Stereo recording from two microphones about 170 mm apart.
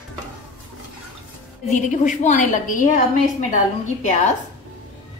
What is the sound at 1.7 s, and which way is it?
A woman's voice, 45° left (ahead or behind).